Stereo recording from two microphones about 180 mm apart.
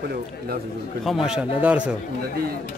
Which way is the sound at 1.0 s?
Centre (ahead or behind).